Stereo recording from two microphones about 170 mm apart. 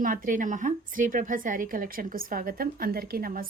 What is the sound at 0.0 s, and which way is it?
Speech, 55° right (ahead or behind).